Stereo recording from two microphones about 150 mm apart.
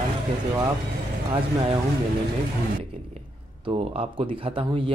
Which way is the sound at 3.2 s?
40° right (ahead or behind).